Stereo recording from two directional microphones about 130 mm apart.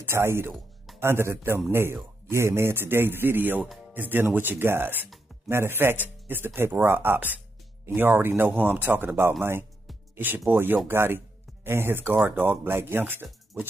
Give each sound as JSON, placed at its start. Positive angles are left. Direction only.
{"t": 0.0, "sound": "speech", "side_deg": -20}